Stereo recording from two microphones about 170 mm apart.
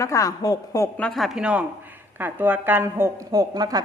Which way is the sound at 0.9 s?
5° left (ahead or behind).